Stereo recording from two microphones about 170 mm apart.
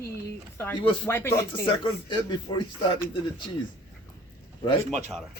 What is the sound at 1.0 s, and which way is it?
Speech, 15° left (ahead or behind).